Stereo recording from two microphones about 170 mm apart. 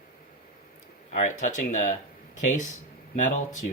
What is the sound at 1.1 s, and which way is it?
Speech, 45° left (ahead or behind).